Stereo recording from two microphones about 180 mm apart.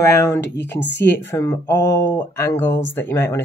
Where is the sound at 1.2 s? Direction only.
15° left (ahead or behind).